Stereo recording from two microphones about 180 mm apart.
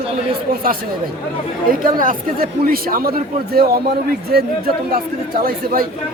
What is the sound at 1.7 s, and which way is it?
A man's voice, 50° right (ahead or behind).